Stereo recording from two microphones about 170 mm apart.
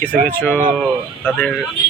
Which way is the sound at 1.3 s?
5° left (ahead or behind).